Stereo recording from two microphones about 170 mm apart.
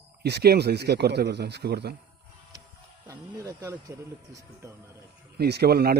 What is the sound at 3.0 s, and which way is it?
Speech, 20° right (ahead or behind).